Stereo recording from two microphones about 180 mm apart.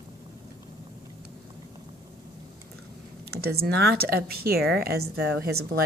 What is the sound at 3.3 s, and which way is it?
A woman's voice, 60° right (ahead or behind).